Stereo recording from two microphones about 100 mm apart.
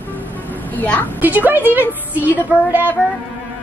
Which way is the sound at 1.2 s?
20° right (ahead or behind).